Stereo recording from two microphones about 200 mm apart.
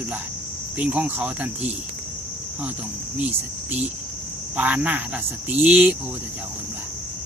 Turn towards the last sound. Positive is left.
turn(degrees=-10)  # may be behind; listen again after turning